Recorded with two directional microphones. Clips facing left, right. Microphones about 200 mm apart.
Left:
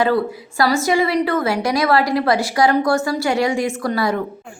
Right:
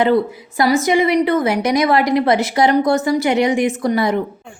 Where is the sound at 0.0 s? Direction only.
20° right (ahead or behind).